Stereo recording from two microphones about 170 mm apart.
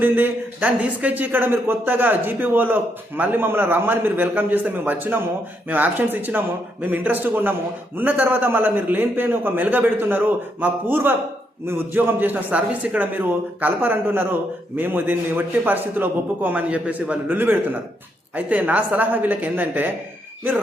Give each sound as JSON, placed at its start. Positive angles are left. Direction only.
{"t": 0.0, "sound": "a man's voice", "side_deg": -10}